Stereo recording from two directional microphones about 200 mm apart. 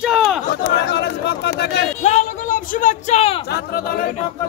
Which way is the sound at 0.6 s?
55° left (ahead or behind).